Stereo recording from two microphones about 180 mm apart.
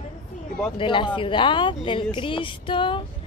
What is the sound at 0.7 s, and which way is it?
Speech, 25° left (ahead or behind).